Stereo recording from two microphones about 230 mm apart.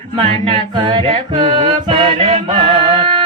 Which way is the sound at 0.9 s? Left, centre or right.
Right.